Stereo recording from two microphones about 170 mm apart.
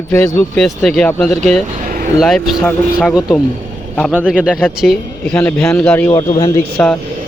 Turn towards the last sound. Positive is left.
turn(degrees=10)  # may be behind; listen again after turning